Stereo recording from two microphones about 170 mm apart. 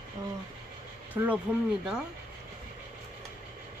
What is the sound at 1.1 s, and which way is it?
Speech, 10° right (ahead or behind).